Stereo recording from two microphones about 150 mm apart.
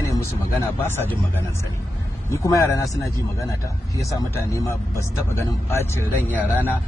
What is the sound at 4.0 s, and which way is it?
Speech, 20° left (ahead or behind).